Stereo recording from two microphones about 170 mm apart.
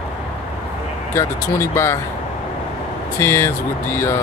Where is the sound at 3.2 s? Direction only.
15° left (ahead or behind).